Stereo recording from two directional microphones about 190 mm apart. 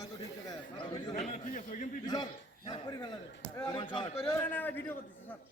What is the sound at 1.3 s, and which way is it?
Speech, 40° left (ahead or behind).